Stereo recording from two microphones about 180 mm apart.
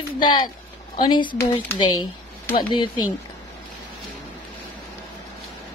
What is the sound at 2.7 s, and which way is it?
Speech, 25° left (ahead or behind).